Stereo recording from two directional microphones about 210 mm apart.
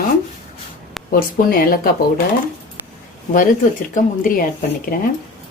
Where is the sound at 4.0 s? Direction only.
40° left (ahead or behind).